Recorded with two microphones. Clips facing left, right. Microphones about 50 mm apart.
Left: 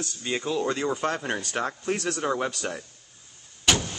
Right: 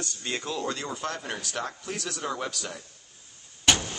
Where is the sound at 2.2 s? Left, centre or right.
Left.